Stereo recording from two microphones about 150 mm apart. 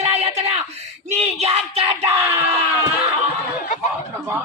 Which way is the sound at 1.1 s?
45° right (ahead or behind).